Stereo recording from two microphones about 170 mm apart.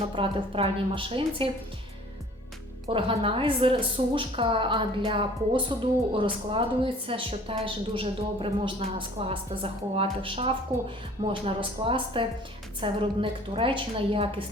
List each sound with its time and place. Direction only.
0.1 s a woman's voice: 30° right (ahead or behind)
2.9 s a woman's voice: 30° right (ahead or behind)